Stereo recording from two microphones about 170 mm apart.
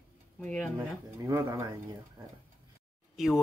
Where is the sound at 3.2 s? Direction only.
Centre (ahead or behind).